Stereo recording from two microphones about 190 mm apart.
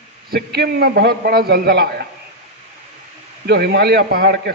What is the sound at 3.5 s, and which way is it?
A man's voice, 60° right (ahead or behind).